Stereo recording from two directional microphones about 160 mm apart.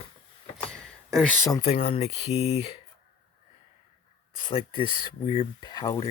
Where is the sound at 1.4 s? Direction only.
20° left (ahead or behind).